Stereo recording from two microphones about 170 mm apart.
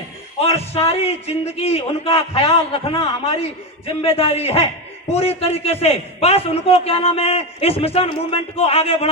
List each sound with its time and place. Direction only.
0.3 s a man's voice: 35° left (ahead or behind)